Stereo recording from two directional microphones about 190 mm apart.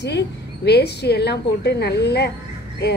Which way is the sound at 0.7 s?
60° left (ahead or behind).